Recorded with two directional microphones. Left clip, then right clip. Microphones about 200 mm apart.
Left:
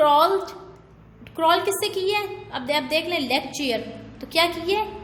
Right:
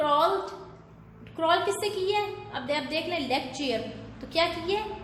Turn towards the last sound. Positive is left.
turn(degrees=50)  # may be behind; listen again after turning